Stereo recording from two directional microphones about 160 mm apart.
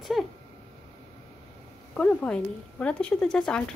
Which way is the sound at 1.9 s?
5° left (ahead or behind).